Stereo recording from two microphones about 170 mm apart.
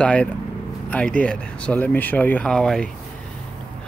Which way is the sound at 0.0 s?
5° left (ahead or behind).